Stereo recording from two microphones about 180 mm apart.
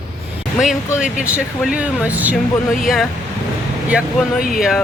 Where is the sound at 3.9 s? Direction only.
5° right (ahead or behind).